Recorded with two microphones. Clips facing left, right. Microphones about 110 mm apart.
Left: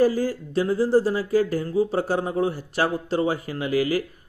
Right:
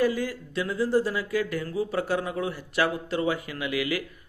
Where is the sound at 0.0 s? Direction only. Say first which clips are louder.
Left 5 dB; 35° left (ahead or behind).